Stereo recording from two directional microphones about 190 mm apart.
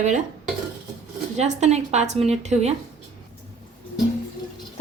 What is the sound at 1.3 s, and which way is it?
A woman's voice, 35° right (ahead or behind).